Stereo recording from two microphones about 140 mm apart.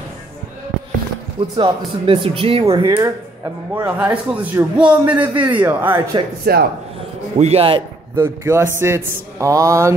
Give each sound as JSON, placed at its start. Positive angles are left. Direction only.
{"t": 1.6, "sound": "speech", "side_deg": -40}
{"t": 3.0, "sound": "speech", "side_deg": -15}
{"t": 5.1, "sound": "speech", "side_deg": -35}
{"t": 5.5, "sound": "speech", "side_deg": -15}
{"t": 6.5, "sound": "speech", "side_deg": -90}
{"t": 7.3, "sound": "speech", "side_deg": -45}
{"t": 8.2, "sound": "a man's voice", "side_deg": -20}